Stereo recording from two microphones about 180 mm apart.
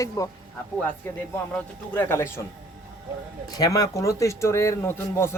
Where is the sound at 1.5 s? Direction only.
10° left (ahead or behind).